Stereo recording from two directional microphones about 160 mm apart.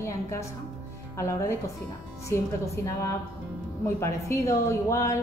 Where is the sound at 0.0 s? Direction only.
20° left (ahead or behind).